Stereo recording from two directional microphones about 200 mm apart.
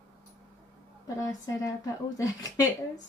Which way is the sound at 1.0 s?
15° left (ahead or behind).